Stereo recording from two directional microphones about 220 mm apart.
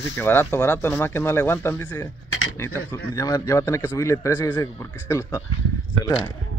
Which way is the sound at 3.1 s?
15° left (ahead or behind).